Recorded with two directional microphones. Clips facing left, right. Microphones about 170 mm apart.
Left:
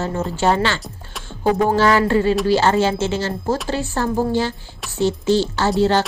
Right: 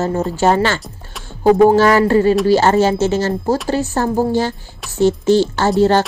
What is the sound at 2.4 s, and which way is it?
Speech, 45° right (ahead or behind).